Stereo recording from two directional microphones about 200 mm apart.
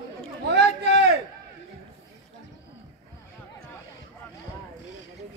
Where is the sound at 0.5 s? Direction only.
60° right (ahead or behind).